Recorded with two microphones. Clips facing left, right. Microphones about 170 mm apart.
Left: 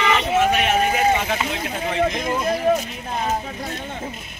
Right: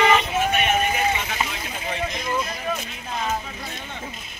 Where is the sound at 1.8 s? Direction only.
50° left (ahead or behind).